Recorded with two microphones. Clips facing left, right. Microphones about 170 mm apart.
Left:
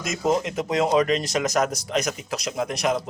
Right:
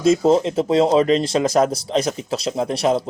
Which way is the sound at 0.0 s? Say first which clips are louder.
Right 8 dB; 30° right (ahead or behind).